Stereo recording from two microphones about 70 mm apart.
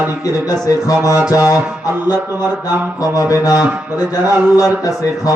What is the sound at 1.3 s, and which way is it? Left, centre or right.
Speech, left.